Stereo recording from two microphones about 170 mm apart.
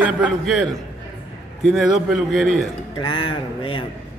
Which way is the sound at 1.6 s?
Centre (ahead or behind).